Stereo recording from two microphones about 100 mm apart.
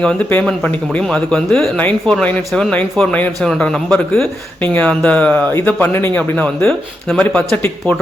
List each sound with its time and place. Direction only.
0.0 s speech: 15° left (ahead or behind)
1.8 s speech: 15° left (ahead or behind)